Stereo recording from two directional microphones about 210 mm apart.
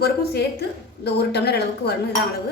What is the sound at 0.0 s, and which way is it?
A woman's voice, 50° left (ahead or behind).